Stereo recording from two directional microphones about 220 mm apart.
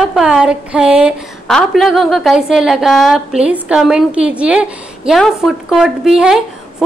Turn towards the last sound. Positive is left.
turn(degrees=0)  # may be behind; listen again after turning